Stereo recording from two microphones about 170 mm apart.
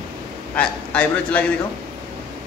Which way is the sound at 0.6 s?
5° left (ahead or behind).